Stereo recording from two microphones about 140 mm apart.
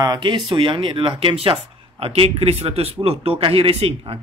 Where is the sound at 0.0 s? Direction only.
30° right (ahead or behind).